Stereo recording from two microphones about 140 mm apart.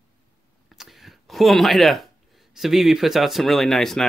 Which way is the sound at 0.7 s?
Centre (ahead or behind).